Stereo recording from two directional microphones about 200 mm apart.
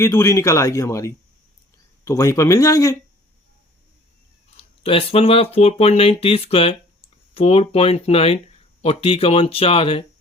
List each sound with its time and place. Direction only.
0.0 s speech: 15° left (ahead or behind)
4.5 s speech: 30° left (ahead or behind)